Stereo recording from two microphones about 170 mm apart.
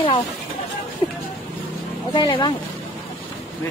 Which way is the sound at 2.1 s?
30° left (ahead or behind).